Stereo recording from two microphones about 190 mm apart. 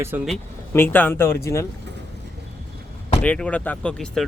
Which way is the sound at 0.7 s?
10° left (ahead or behind).